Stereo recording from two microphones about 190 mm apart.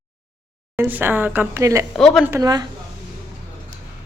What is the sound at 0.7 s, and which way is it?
A woman's voice, 10° right (ahead or behind).